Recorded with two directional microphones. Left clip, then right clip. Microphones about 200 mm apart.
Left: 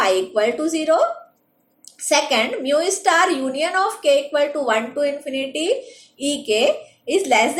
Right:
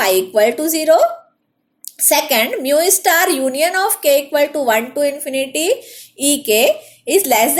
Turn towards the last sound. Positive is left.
turn(degrees=-45)  # may be behind; listen again after turning